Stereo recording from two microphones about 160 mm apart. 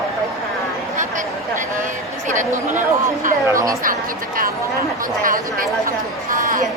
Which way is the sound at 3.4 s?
20° right (ahead or behind).